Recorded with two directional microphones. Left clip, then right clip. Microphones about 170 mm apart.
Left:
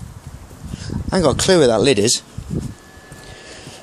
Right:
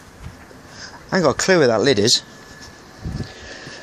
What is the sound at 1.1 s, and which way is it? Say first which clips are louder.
Speech: left 1 dB; 20° left (ahead or behind).